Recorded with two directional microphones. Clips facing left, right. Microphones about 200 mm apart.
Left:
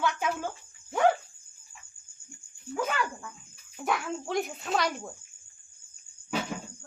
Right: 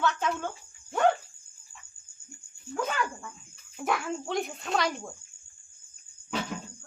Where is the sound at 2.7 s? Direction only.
5° left (ahead or behind).